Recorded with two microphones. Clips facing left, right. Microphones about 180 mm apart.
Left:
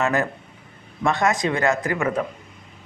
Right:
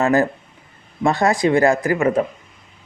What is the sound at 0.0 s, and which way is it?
A man's voice, 35° right (ahead or behind).